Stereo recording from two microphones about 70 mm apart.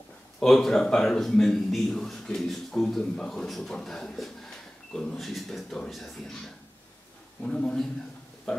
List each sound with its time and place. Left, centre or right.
0.4 s a man's voice: centre
7.4 s speech: centre
8.5 s a sound: centre